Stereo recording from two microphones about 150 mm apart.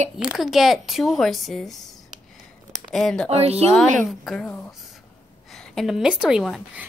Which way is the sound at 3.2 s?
45° right (ahead or behind).